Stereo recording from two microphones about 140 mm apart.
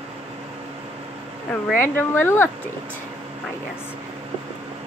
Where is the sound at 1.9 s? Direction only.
15° left (ahead or behind).